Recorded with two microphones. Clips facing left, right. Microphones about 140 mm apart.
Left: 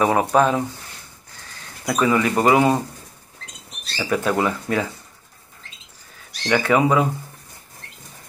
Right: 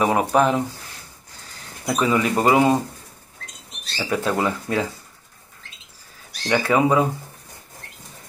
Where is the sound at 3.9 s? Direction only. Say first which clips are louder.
Left 2 dB; 20° right (ahead or behind).